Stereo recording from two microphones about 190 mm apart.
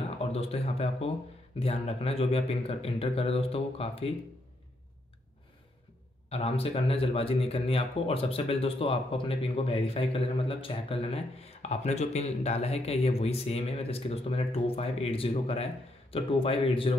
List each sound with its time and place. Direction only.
0.3 s speech: 30° left (ahead or behind)
6.3 s speech: 30° left (ahead or behind)